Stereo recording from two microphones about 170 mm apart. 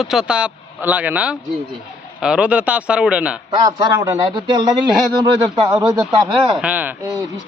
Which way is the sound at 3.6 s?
25° right (ahead or behind).